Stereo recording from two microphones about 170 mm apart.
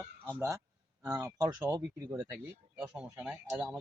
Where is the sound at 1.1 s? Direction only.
20° right (ahead or behind).